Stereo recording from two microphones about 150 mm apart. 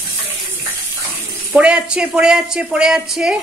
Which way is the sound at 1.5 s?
5° right (ahead or behind).